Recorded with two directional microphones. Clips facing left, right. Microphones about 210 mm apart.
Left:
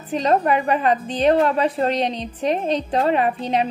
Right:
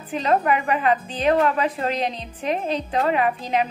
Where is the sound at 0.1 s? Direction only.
35° left (ahead or behind).